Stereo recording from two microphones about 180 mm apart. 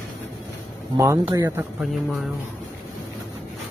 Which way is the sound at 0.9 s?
15° right (ahead or behind).